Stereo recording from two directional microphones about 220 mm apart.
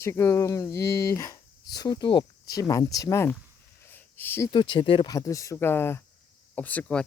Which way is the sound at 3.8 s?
10° left (ahead or behind).